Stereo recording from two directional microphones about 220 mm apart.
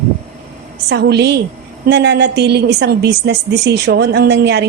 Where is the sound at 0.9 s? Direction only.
50° right (ahead or behind).